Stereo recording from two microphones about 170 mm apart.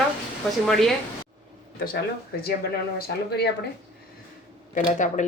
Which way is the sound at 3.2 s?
70° left (ahead or behind).